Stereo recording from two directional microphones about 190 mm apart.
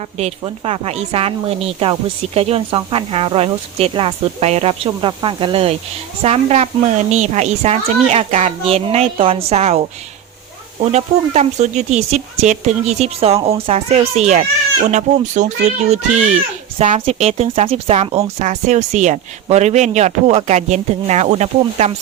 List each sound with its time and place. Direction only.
0.2 s speech: 30° right (ahead or behind)
10.9 s speech: 35° right (ahead or behind)